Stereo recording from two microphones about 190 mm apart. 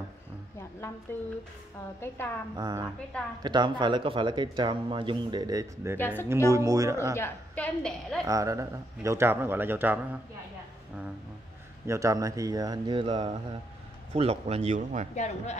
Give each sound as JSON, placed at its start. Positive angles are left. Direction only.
{"t": 0.6, "sound": "a sound", "side_deg": 15}
{"t": 2.0, "sound": "a woman's voice", "side_deg": 10}
{"t": 2.5, "sound": "speech", "side_deg": -20}
{"t": 5.9, "sound": "a woman's voice", "side_deg": 10}
{"t": 6.2, "sound": "a man's voice", "side_deg": -15}
{"t": 7.2, "sound": "a woman's voice", "side_deg": 10}
{"t": 8.3, "sound": "a man's voice", "side_deg": -15}
{"t": 11.8, "sound": "speech", "side_deg": -15}
{"t": 15.1, "sound": "speech", "side_deg": 35}